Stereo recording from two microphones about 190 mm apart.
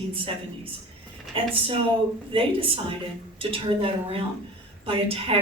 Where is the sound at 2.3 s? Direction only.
30° right (ahead or behind).